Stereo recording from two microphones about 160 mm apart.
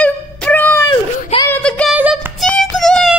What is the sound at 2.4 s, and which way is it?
Music, 5° left (ahead or behind).